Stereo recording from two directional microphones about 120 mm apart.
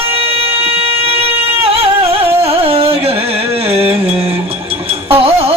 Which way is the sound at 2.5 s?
55° right (ahead or behind).